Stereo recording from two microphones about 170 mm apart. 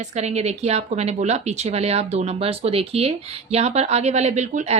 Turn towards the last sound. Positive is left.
turn(degrees=-45)  # may be behind; listen again after turning